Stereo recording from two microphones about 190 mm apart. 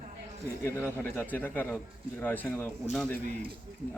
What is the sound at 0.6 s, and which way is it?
A man's voice, 10° left (ahead or behind).